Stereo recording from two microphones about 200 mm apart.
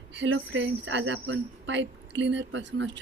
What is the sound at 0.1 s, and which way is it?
A woman's voice, 65° right (ahead or behind).